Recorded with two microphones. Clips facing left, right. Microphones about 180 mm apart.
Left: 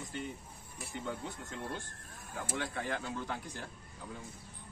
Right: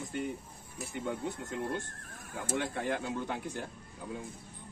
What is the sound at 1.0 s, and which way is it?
Speech, 20° right (ahead or behind).